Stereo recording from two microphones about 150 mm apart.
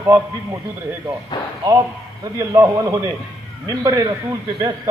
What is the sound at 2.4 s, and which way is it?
Speech, 20° right (ahead or behind).